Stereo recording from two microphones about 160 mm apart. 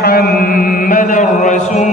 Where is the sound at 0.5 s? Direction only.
65° left (ahead or behind); by 1.9 s 50° left (ahead or behind).